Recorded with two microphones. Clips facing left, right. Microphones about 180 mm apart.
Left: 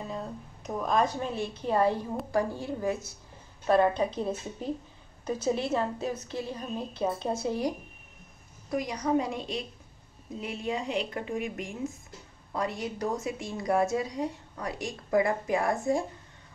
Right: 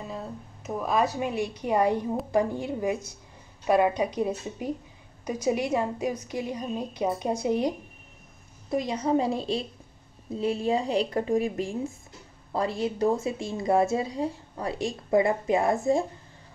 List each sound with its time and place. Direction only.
0.0 s a woman's voice: 5° right (ahead or behind); by 16.1 s 25° right (ahead or behind)